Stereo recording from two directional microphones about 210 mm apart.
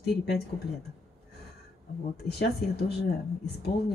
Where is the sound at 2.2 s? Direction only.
50° left (ahead or behind).